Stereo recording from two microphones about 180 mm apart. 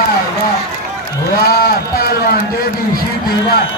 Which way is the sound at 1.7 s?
60° left (ahead or behind).